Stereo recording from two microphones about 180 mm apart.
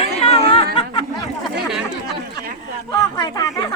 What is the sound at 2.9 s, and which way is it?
Speech, 20° left (ahead or behind).